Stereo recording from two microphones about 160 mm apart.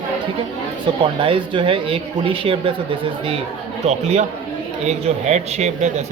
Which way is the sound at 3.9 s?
45° right (ahead or behind).